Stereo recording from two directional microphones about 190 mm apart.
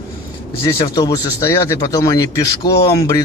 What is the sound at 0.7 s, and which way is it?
Speech, 20° left (ahead or behind).